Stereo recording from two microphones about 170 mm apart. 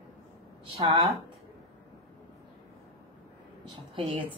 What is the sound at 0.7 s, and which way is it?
Speech, 30° right (ahead or behind).